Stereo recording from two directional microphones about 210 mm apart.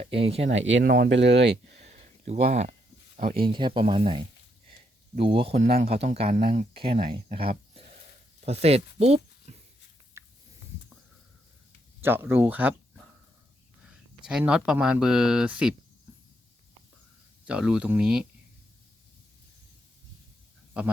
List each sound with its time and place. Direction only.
0.2 s speech: 30° right (ahead or behind)
0.4 s speech: 60° right (ahead or behind)
0.9 s speech: 50° right (ahead or behind)
1.6 s a sound: 30° right (ahead or behind)
3.2 s speech: 30° right (ahead or behind)
10.2 s a sound: 15° right (ahead or behind)
12.0 s speech: 10° right (ahead or behind)
13.8 s speech: 5° right (ahead or behind)
17.4 s speech: 5° right (ahead or behind)